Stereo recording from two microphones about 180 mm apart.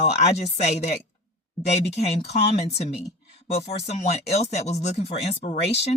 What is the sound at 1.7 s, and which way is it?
Speech, 35° left (ahead or behind).